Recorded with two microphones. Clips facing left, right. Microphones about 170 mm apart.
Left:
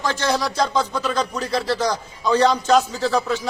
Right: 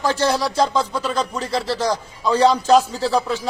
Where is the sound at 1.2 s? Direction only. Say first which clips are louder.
Even; 25° right (ahead or behind).